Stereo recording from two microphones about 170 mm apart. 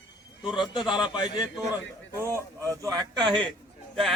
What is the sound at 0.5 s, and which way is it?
Speech, 25° left (ahead or behind).